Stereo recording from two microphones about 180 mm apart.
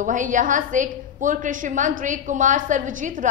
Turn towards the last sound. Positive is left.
turn(degrees=-45)  # may be behind; listen again after turning